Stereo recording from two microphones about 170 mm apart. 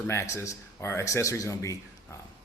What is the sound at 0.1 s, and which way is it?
A man's voice, 15° left (ahead or behind).